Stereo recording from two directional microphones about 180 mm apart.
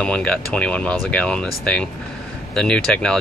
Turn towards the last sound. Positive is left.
turn(degrees=5)  # may be behind; listen again after turning